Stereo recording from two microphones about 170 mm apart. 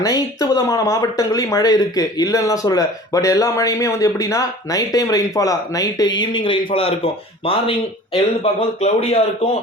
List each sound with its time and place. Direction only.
0.0 s speech: 20° left (ahead or behind)